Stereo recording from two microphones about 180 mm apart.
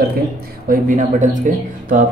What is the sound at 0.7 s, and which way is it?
Speech, 45° right (ahead or behind).